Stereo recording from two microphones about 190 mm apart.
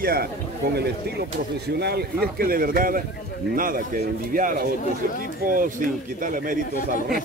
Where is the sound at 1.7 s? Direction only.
60° right (ahead or behind).